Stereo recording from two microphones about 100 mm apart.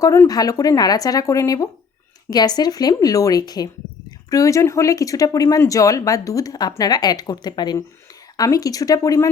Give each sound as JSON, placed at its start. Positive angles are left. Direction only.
{"t": 0.3, "sound": "speech", "side_deg": 40}